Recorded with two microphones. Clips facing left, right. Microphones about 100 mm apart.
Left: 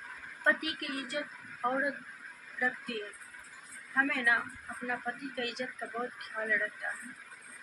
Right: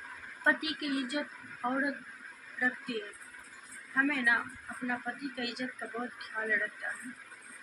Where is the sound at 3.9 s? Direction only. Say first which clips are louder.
Even; centre (ahead or behind).